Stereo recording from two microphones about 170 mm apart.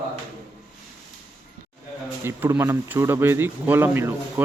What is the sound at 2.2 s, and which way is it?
Speech, 15° right (ahead or behind).